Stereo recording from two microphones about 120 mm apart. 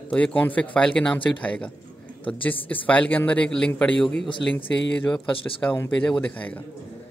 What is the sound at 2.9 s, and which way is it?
Speech, 10° left (ahead or behind).